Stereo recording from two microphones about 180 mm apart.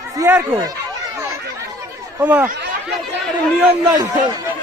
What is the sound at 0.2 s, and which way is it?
Speech, 10° right (ahead or behind).